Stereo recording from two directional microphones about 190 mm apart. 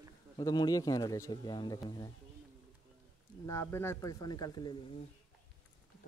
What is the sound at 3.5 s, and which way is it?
Speech, 15° left (ahead or behind).